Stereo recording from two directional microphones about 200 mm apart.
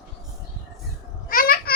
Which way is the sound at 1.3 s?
45° left (ahead or behind).